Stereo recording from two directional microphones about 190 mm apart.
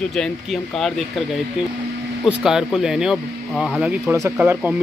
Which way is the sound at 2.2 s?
5° right (ahead or behind).